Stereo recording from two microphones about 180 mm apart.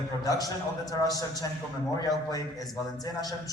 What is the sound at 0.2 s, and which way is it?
A man's voice, 20° left (ahead or behind).